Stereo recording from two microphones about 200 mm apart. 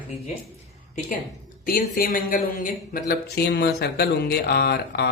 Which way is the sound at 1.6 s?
45° left (ahead or behind).